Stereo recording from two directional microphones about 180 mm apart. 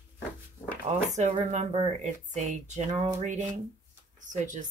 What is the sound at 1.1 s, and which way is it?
Speech, 40° right (ahead or behind).